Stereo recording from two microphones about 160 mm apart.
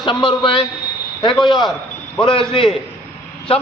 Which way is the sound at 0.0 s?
30° left (ahead or behind).